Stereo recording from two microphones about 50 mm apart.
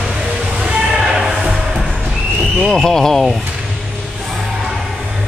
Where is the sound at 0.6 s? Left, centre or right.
Centre.